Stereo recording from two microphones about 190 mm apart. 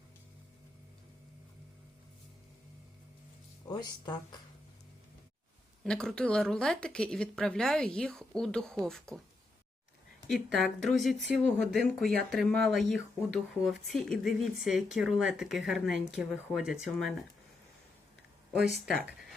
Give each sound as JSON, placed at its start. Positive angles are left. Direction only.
{"t": 3.7, "sound": "speech", "side_deg": 20}
{"t": 5.8, "sound": "speech", "side_deg": 5}
{"t": 10.2, "sound": "speech", "side_deg": 0}
{"t": 18.5, "sound": "speech", "side_deg": -5}